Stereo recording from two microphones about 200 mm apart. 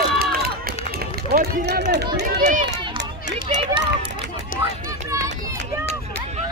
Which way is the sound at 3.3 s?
25° right (ahead or behind).